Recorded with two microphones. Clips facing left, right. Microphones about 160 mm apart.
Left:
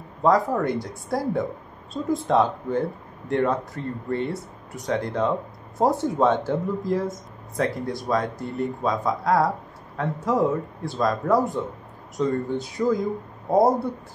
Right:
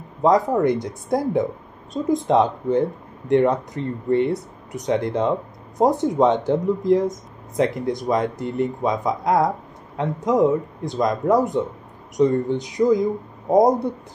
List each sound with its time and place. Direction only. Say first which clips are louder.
0.2 s speech: right 3 dB; 20° right (ahead or behind)